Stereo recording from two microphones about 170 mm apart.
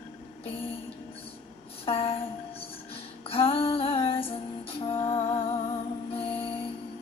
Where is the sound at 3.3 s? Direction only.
35° left (ahead or behind).